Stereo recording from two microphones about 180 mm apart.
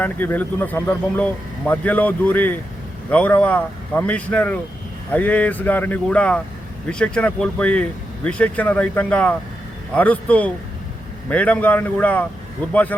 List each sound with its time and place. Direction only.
0.0 s speech: 10° left (ahead or behind)